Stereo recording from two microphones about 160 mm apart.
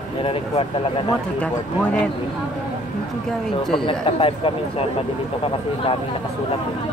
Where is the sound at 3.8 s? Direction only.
35° left (ahead or behind).